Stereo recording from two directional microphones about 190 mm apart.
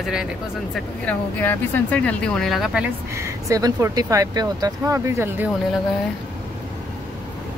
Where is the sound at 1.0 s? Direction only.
10° left (ahead or behind).